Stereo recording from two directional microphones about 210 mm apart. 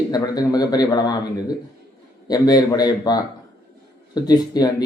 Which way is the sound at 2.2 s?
20° left (ahead or behind).